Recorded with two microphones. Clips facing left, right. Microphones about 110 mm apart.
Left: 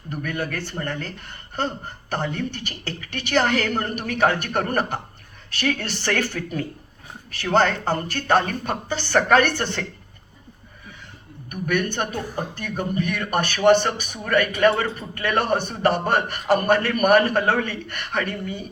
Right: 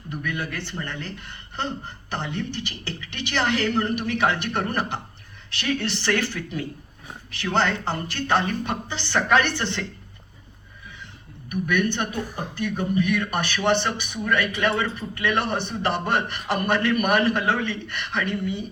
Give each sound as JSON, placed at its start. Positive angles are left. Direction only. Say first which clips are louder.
{"t": 0.1, "sound": "a man's voice", "louder": "left 2 dB", "side_deg": 45}
{"t": 11.6, "sound": "a man's voice", "louder": "left 1 dB", "side_deg": 45}